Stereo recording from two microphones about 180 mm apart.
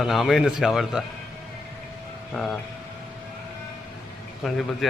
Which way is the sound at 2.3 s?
Centre (ahead or behind).